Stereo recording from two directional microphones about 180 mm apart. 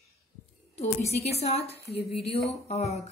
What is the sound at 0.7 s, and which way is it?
A woman's voice, 35° left (ahead or behind).